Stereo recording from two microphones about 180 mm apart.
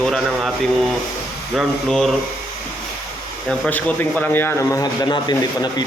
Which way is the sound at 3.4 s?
5° left (ahead or behind).